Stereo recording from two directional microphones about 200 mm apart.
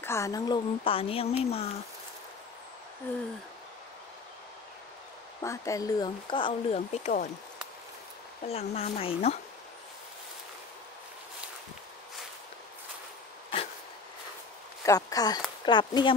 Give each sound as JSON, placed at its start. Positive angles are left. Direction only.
{"t": 0.0, "sound": "a woman's voice", "side_deg": 15}
{"t": 5.4, "sound": "speech", "side_deg": 15}
{"t": 8.5, "sound": "a woman's voice", "side_deg": 30}
{"t": 14.9, "sound": "speech", "side_deg": 15}